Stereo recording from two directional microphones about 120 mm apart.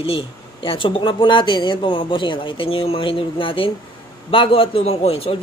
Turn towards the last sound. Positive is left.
turn(degrees=55)  # may be behind; listen again after turning